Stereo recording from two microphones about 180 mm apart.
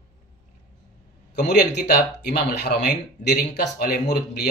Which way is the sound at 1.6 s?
65° left (ahead or behind).